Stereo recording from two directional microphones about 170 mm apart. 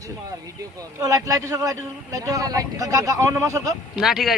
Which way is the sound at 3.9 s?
Centre (ahead or behind).